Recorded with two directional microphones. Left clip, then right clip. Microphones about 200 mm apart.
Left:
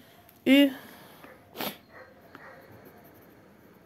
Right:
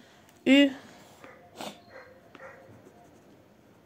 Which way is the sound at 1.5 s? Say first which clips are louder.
Left 5 dB; 30° left (ahead or behind).